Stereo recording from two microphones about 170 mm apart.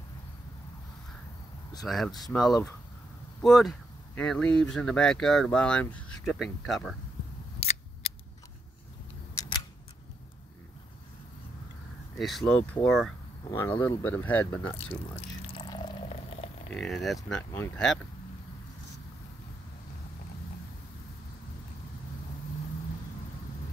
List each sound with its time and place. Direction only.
1.9 s speech: centre (ahead or behind)
7.6 s scissors: 35° left (ahead or behind)
12.2 s speech: centre (ahead or behind)
13.4 s speech: 15° left (ahead or behind)
15.1 s pour: 35° left (ahead or behind)
16.7 s speech: centre (ahead or behind)